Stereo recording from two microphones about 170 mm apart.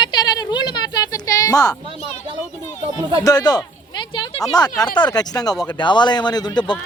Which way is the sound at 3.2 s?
25° left (ahead or behind).